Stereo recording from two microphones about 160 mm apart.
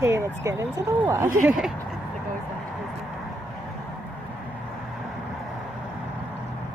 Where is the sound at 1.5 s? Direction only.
5° right (ahead or behind).